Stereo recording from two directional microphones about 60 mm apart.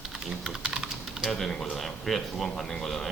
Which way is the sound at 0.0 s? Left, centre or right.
Centre.